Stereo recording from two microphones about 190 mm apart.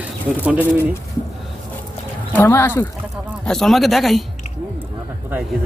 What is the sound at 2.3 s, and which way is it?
Speech, 10° left (ahead or behind).